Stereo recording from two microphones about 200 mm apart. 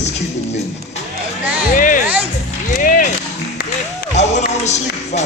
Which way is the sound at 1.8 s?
40° left (ahead or behind).